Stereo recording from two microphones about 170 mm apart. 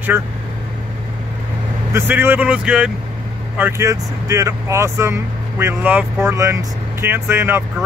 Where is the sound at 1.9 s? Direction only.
15° right (ahead or behind).